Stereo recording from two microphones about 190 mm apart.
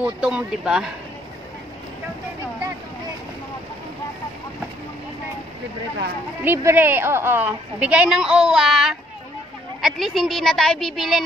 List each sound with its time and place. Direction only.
0.0 s a woman's voice: 5° right (ahead or behind)
6.4 s a woman's voice: 10° right (ahead or behind)